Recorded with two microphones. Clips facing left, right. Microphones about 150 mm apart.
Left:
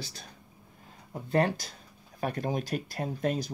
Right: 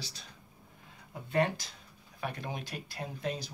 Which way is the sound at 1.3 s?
40° left (ahead or behind).